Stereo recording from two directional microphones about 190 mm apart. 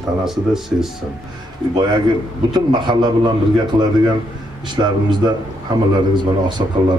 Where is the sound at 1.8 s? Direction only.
25° right (ahead or behind).